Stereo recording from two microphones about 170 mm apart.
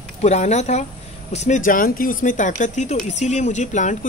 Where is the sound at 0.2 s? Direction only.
40° left (ahead or behind).